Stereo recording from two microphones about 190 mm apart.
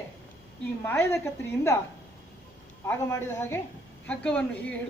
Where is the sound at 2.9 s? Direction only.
15° left (ahead or behind).